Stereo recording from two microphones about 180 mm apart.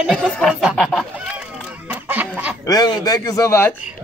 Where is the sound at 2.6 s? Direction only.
20° left (ahead or behind).